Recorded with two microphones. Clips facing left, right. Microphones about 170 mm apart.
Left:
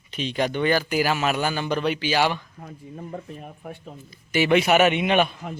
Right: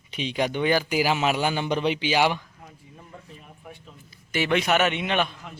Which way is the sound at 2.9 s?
50° left (ahead or behind).